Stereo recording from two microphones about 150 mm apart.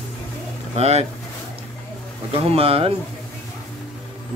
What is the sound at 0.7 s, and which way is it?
Speech, 45° right (ahead or behind).